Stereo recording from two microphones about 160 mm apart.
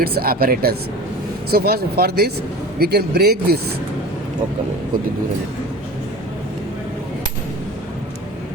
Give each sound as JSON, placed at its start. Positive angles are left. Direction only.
{"t": 0.0, "sound": "speech", "side_deg": -70}